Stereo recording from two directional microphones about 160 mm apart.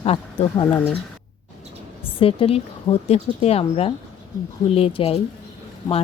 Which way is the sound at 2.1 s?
35° left (ahead or behind).